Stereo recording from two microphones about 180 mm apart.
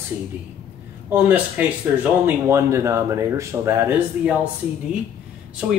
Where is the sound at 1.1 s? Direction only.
10° right (ahead or behind).